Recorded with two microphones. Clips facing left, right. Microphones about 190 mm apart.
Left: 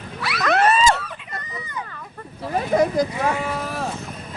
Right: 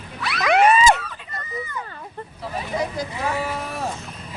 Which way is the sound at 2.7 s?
50° left (ahead or behind).